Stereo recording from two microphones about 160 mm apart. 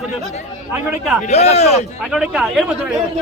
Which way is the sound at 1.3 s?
40° left (ahead or behind).